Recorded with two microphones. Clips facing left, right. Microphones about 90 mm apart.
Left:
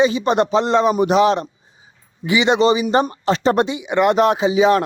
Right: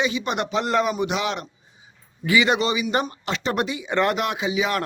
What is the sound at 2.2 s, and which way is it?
Speech, 25° left (ahead or behind).